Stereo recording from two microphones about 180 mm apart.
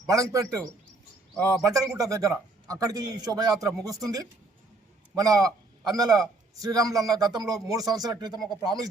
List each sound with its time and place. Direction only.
0.1 s a man's voice: 20° right (ahead or behind)
1.6 s a man's voice: 20° right (ahead or behind)